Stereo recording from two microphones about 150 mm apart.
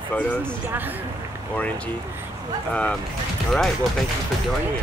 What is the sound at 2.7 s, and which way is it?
Speech, 10° left (ahead or behind).